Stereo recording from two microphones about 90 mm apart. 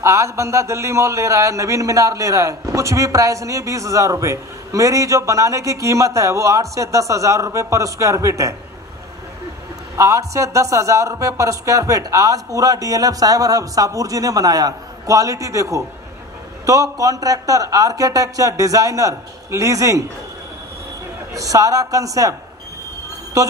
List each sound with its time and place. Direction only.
0.0 s a man's voice: 35° right (ahead or behind)
9.9 s a man's voice: 35° right (ahead or behind)
21.3 s a man's voice: 40° right (ahead or behind)